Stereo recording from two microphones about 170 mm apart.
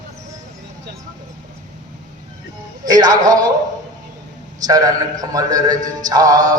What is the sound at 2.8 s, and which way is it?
Speech, 20° right (ahead or behind).